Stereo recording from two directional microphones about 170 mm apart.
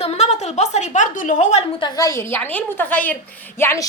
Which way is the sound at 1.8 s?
20° left (ahead or behind).